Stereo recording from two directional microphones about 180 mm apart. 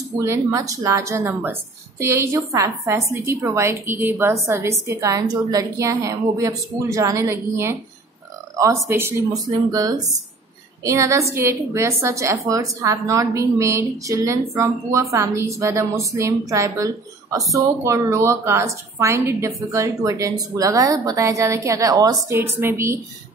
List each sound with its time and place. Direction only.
0.2 s a woman's voice: 15° right (ahead or behind)